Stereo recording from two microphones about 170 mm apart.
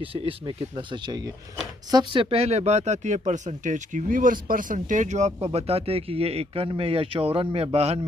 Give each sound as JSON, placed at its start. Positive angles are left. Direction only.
{"t": 0.0, "sound": "speech", "side_deg": -35}